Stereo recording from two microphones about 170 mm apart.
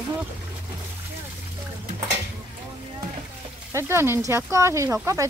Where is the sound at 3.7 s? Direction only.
15° right (ahead or behind).